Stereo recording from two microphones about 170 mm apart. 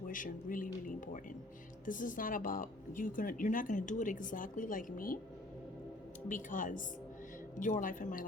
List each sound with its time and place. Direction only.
0.1 s a woman's voice: 50° left (ahead or behind)
6.2 s a woman's voice: 50° left (ahead or behind)